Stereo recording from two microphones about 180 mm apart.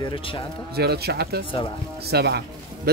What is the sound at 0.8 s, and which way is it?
Speech, 65° right (ahead or behind).